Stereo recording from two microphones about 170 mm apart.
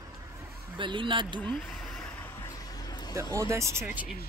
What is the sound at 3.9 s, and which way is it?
Speech, 55° left (ahead or behind).